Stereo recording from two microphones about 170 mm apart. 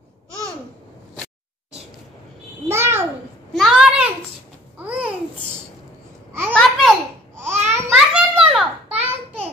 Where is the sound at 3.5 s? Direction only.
Centre (ahead or behind).